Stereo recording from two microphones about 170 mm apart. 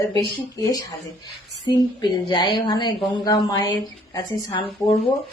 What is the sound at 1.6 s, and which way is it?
A woman's voice, 25° left (ahead or behind).